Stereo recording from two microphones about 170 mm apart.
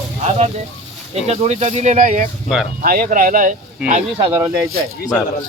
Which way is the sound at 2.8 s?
55° right (ahead or behind).